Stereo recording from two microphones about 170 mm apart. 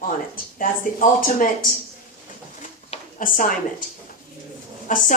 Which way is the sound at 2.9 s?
50° left (ahead or behind).